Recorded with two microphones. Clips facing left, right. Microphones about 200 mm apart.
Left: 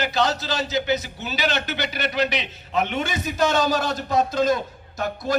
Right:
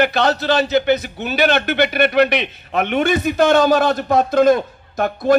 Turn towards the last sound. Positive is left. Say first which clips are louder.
# right 9 dB
turn(degrees=-55)  # may be behind; listen again after turning